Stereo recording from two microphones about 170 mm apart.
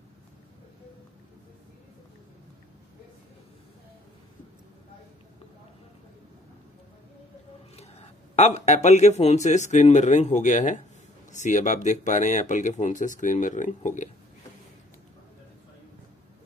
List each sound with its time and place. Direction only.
8.4 s speech: 40° left (ahead or behind)